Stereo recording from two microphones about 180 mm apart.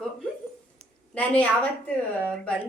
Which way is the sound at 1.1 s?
10° left (ahead or behind).